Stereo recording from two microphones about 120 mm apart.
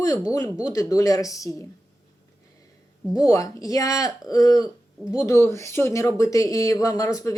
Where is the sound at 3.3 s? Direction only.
30° left (ahead or behind).